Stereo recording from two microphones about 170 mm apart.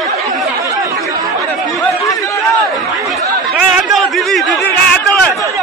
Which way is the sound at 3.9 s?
Centre (ahead or behind).